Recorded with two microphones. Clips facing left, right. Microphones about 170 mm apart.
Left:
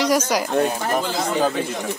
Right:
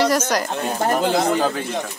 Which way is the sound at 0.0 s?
10° left (ahead or behind).